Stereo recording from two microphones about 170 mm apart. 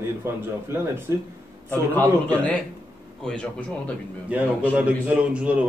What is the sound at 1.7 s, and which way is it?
A man's voice, 10° left (ahead or behind).